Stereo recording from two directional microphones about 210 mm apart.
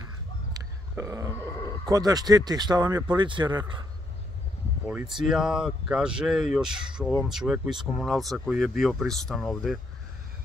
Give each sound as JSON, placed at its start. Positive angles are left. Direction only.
{"t": 0.5, "sound": "burping", "side_deg": -15}
{"t": 1.9, "sound": "speech", "side_deg": -20}
{"t": 4.8, "sound": "speech", "side_deg": -5}